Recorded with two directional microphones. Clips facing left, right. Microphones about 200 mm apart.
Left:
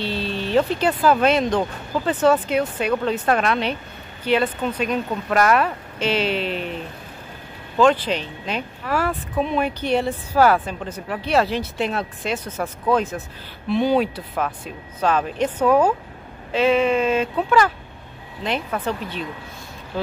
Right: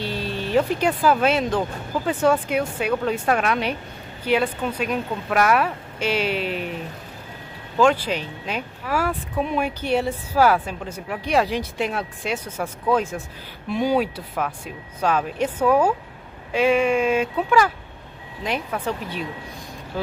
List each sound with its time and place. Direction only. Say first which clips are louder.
0.0 s speech: left 2 dB; 10° right (ahead or behind)
7.8 s speech: left 2 dB; 10° right (ahead or behind)